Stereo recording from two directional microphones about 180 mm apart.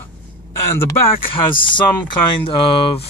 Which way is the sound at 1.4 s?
25° left (ahead or behind).